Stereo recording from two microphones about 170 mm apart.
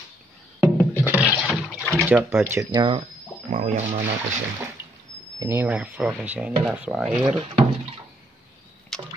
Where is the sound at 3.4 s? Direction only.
45° right (ahead or behind).